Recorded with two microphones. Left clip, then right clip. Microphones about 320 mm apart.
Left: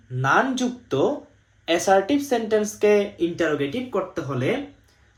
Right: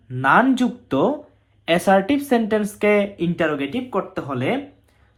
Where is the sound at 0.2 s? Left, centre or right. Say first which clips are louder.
Right 4 dB; centre.